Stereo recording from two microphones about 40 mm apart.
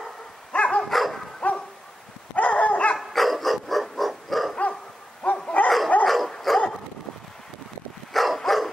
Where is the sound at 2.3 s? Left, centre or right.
Left.